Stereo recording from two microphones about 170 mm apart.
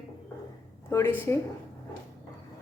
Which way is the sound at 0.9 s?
15° left (ahead or behind).